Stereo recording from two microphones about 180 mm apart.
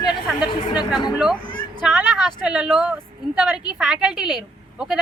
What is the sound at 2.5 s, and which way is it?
Speech, 5° right (ahead or behind).